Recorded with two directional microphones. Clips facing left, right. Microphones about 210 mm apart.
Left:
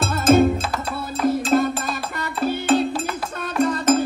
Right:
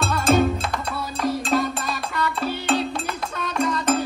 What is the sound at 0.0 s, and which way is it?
Music, 5° left (ahead or behind).